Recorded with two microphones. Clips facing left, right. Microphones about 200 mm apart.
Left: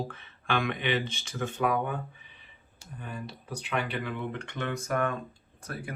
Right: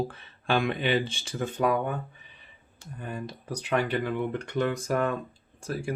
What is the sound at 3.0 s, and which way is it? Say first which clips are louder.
Speech: right 4 dB; 45° right (ahead or behind).